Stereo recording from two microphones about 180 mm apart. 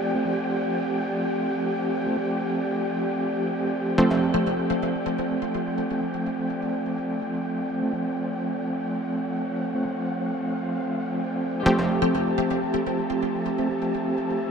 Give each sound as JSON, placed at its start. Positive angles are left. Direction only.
{"t": 3.9, "sound": "music", "side_deg": 0}
{"t": 11.6, "sound": "music", "side_deg": 0}